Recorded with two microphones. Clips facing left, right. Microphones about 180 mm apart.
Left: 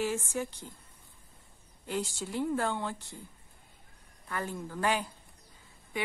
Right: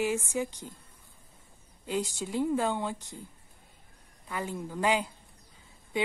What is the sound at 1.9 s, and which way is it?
Speech, 15° right (ahead or behind).